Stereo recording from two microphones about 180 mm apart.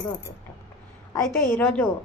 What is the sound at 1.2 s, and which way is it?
Speech, 10° left (ahead or behind).